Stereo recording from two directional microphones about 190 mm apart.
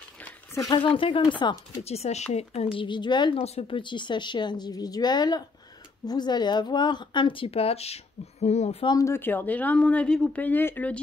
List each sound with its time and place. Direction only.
0.6 s a woman's voice: 20° left (ahead or behind)
1.9 s a woman's voice: 35° left (ahead or behind)
8.9 s speech: 15° left (ahead or behind)